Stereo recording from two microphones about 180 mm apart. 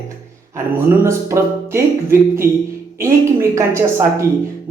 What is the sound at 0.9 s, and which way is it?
Speech, 15° right (ahead or behind).